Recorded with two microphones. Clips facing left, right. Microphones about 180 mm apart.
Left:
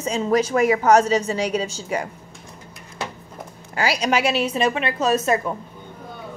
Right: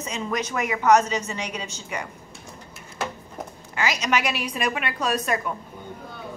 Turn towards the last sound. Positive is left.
turn(degrees=25)  # may be behind; listen again after turning